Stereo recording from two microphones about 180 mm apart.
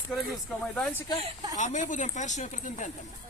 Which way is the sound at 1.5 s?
45° left (ahead or behind).